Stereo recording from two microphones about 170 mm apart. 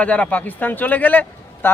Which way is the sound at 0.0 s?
5° left (ahead or behind).